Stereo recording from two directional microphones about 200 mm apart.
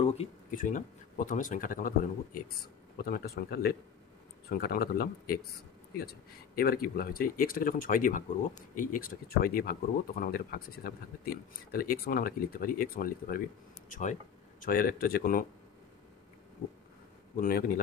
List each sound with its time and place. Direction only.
0.0 s speech: 30° left (ahead or behind); by 15.4 s 45° left (ahead or behind)
17.4 s speech: 50° left (ahead or behind)